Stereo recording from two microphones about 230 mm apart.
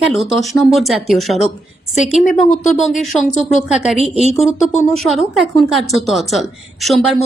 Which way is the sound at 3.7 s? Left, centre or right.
Centre.